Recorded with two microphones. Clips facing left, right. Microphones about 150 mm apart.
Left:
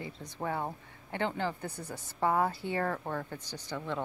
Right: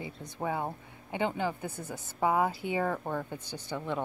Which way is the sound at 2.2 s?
10° right (ahead or behind).